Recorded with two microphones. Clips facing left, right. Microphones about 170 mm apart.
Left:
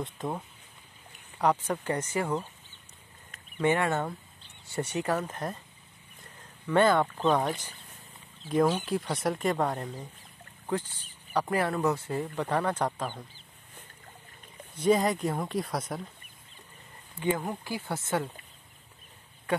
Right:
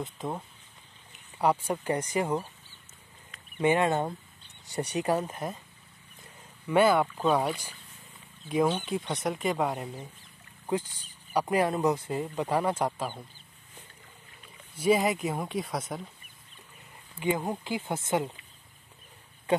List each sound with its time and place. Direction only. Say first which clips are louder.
0.0 s speech: left 1 dB; centre (ahead or behind)
1.4 s speech: even; 10° right (ahead or behind)
3.5 s speech: right 2 dB; 15° right (ahead or behind)
6.7 s speech: right 1 dB; 10° right (ahead or behind)
8.6 s speech: left 1 dB; 5° left (ahead or behind)
10.7 s speech: right 1 dB; 15° right (ahead or behind)
14.8 s speech: even; 10° right (ahead or behind)
17.2 s speech: right 1 dB; 20° right (ahead or behind)